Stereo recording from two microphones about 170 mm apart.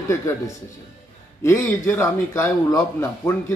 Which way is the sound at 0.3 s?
15° left (ahead or behind).